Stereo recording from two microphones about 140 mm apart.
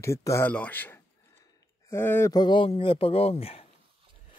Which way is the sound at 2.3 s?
35° left (ahead or behind).